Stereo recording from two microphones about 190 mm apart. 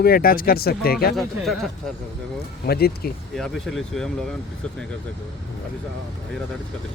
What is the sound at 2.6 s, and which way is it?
Speech, 55° left (ahead or behind).